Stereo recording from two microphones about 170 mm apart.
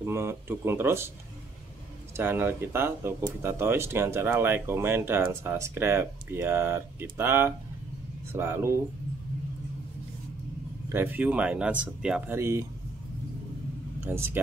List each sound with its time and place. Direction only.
0.0 s speech: 15° right (ahead or behind)
2.1 s speech: 15° right (ahead or behind)
10.9 s speech: 10° right (ahead or behind)
14.0 s speech: 15° right (ahead or behind)